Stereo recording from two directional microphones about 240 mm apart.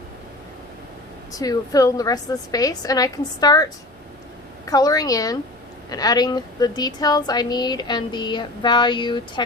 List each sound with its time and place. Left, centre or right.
1.3 s speech: centre